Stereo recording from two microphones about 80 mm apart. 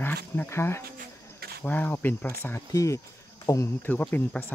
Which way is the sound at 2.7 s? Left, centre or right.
Left.